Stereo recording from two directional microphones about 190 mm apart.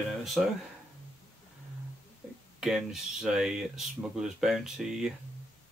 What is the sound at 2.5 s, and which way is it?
Speech, 5° right (ahead or behind).